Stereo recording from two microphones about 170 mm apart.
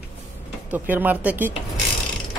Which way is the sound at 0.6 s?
10° right (ahead or behind).